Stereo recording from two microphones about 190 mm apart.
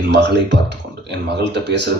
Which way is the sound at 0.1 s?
65° right (ahead or behind).